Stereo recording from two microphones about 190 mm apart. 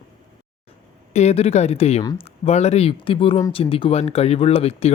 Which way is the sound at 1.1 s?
35° left (ahead or behind).